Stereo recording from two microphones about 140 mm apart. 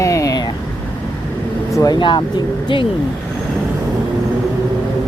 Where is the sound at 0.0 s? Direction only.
20° left (ahead or behind).